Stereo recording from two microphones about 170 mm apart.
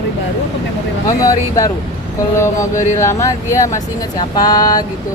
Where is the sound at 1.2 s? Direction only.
20° left (ahead or behind).